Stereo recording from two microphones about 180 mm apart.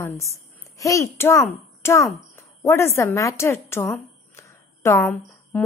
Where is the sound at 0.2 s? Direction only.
15° left (ahead or behind).